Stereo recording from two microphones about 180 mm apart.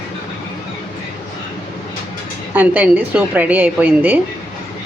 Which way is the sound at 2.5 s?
10° right (ahead or behind).